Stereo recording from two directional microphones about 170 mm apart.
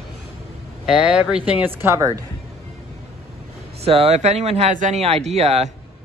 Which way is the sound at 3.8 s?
35° right (ahead or behind).